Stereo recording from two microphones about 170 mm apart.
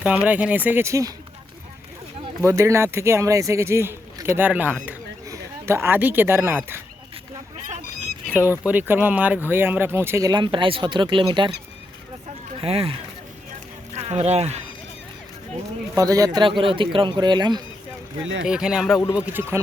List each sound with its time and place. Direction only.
0.3 s speech: 10° right (ahead or behind)
2.4 s speech: 15° right (ahead or behind)
8.3 s speech: 10° right (ahead or behind); by 11.5 s 30° right (ahead or behind)
12.5 s speech: 35° right (ahead or behind)
16.0 s speech: 20° right (ahead or behind)
18.4 s speech: 5° right (ahead or behind)